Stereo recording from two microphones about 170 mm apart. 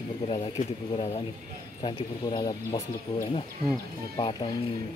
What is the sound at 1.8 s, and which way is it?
Speech, 25° left (ahead or behind).